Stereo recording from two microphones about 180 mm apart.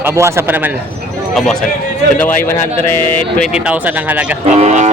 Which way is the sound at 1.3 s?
5° left (ahead or behind).